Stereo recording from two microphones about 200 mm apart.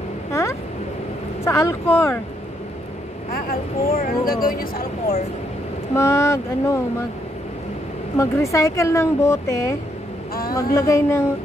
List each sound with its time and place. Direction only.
0.3 s a sound: 15° left (ahead or behind)
1.4 s speech: 15° left (ahead or behind)
3.3 s speech: 45° left (ahead or behind)
5.9 s speech: 15° left (ahead or behind)
8.2 s speech: 15° left (ahead or behind)